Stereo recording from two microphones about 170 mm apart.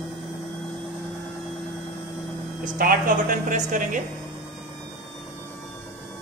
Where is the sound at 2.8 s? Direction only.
50° right (ahead or behind).